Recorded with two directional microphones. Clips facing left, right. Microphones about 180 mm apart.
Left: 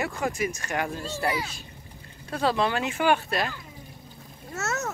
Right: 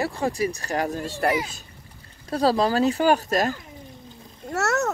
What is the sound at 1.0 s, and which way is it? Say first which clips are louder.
Speech: right 5 dB; 50° right (ahead or behind).